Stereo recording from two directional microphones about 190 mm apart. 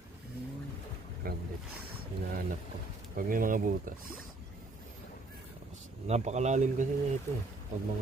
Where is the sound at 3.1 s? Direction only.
50° right (ahead or behind).